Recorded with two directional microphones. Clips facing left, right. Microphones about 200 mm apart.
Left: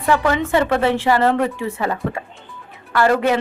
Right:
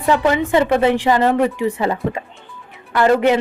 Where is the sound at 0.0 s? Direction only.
20° right (ahead or behind).